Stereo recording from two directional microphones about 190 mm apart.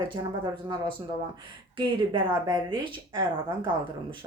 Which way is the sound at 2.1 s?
25° right (ahead or behind).